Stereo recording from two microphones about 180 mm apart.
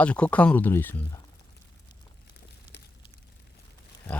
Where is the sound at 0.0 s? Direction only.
5° left (ahead or behind).